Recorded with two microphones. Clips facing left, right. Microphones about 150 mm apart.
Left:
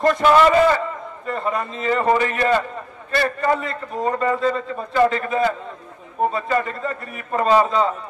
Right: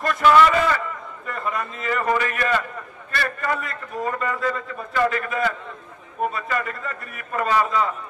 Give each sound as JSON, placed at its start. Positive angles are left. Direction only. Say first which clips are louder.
{"t": 0.0, "sound": "a man's voice", "louder": "left 2 dB", "side_deg": 30}